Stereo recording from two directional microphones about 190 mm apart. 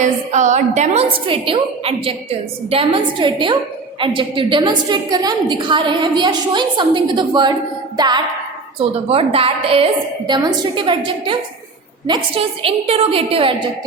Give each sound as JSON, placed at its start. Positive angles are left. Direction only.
{"t": 0.0, "sound": "a woman's voice", "side_deg": -40}